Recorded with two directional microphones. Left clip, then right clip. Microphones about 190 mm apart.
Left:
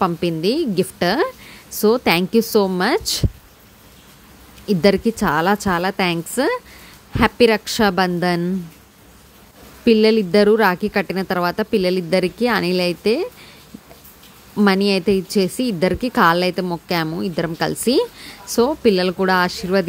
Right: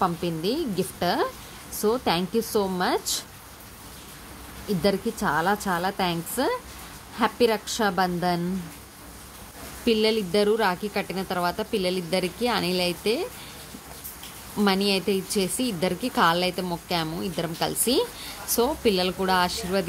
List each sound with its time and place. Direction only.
0.0 s speech: 45° left (ahead or behind)
4.6 s speech: 45° left (ahead or behind)
9.8 s speech: 40° left (ahead or behind)
14.6 s speech: 40° left (ahead or behind)